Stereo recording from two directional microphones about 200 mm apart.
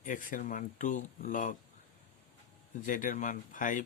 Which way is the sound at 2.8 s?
40° left (ahead or behind).